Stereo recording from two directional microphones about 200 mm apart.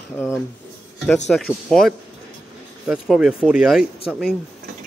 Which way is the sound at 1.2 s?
Centre (ahead or behind).